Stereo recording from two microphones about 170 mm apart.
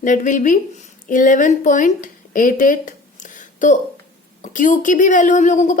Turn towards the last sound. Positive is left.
turn(degrees=45)  # may be behind; listen again after turning